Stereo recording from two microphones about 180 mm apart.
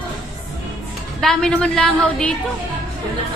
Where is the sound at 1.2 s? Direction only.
5° left (ahead or behind).